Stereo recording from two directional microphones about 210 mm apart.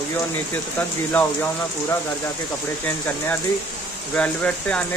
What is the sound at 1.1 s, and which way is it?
Speech, 10° left (ahead or behind).